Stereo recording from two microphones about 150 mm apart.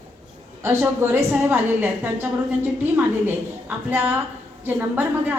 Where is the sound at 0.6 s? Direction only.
15° right (ahead or behind).